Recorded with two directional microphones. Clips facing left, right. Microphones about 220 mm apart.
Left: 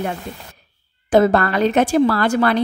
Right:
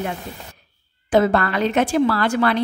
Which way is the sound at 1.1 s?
40° left (ahead or behind).